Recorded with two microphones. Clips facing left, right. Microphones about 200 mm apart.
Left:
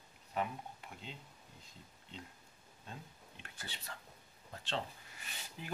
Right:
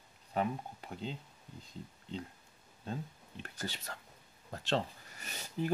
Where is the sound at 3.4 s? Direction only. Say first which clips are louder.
Right 8 dB; 40° right (ahead or behind).